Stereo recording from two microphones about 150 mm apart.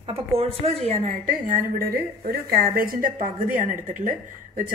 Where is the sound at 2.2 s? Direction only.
70° right (ahead or behind).